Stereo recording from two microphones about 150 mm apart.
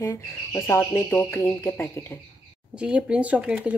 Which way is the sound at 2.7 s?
5° right (ahead or behind).